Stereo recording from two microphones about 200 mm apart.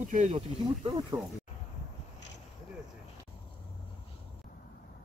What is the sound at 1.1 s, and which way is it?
Speech, 15° right (ahead or behind).